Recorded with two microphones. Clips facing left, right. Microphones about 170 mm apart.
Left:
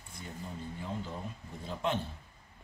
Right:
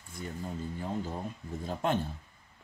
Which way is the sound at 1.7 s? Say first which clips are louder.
Right 3 dB; 45° right (ahead or behind).